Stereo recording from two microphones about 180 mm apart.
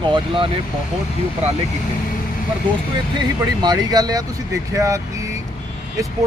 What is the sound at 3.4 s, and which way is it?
Speech, 20° right (ahead or behind).